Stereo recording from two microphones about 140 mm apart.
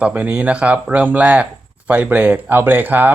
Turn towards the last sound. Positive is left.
turn(degrees=-15)  # may be behind; listen again after turning